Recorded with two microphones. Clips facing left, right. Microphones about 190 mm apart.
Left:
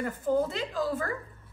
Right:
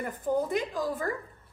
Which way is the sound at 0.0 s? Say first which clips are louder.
Left 2 dB; 15° right (ahead or behind).